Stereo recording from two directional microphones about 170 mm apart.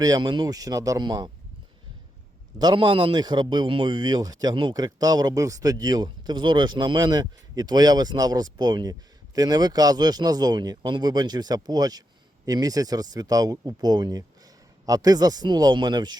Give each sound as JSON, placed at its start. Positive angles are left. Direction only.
{"t": 0.0, "sound": "a man's voice", "side_deg": -25}
{"t": 2.6, "sound": "a man's voice", "side_deg": -25}